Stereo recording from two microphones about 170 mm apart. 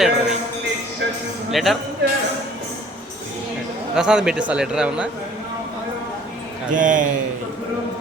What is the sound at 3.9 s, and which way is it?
Speech, 5° right (ahead or behind).